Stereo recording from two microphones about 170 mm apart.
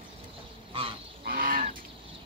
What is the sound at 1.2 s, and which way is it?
Livestock, 60° right (ahead or behind).